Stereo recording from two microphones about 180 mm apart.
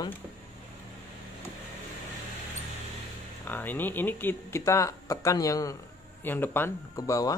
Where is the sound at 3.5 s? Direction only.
10° left (ahead or behind).